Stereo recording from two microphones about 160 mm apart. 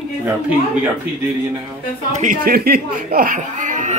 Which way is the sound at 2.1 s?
50° right (ahead or behind).